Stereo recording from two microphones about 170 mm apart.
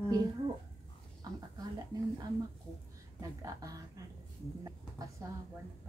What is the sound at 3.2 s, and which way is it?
Speech, 20° right (ahead or behind).